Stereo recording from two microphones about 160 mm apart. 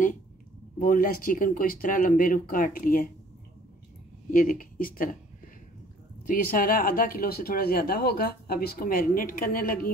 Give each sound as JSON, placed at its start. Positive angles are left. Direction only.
{"t": 0.7, "sound": "speech", "side_deg": 60}
{"t": 4.3, "sound": "speech", "side_deg": 60}
{"t": 6.2, "sound": "speech", "side_deg": 65}